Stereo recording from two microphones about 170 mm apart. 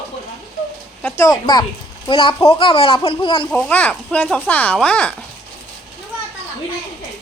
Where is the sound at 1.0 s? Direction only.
15° left (ahead or behind); by 3.5 s 30° left (ahead or behind).